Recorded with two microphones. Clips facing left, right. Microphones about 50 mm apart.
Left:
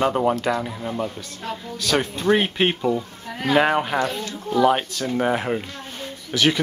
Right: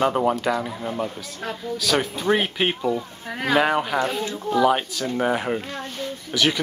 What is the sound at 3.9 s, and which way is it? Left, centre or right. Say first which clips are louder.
Speech: even; centre.